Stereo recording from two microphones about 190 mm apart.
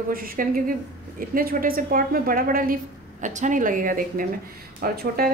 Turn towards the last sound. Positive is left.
turn(degrees=-55)  # may be behind; listen again after turning